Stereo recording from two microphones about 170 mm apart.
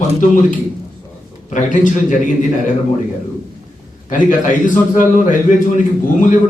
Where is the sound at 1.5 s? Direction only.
50° left (ahead or behind).